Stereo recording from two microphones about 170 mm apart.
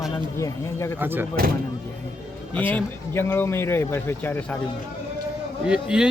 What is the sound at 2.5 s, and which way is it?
Speech, 10° left (ahead or behind).